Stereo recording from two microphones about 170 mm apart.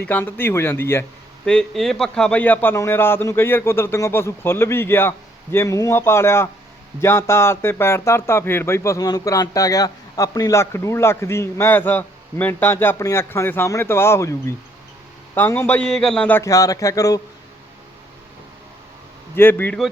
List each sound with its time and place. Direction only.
0.1 s speech: 10° left (ahead or behind)
1.5 s speech: 5° left (ahead or behind); by 17.2 s 20° left (ahead or behind)
19.4 s speech: 10° left (ahead or behind)